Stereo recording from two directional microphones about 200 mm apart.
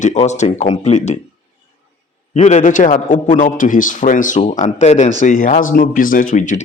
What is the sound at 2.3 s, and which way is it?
A man's voice, 35° left (ahead or behind).